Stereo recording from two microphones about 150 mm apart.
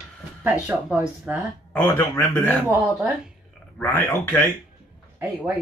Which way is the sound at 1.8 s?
15° left (ahead or behind).